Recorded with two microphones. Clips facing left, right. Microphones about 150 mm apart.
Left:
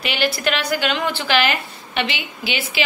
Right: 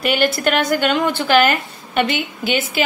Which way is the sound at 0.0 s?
50° right (ahead or behind).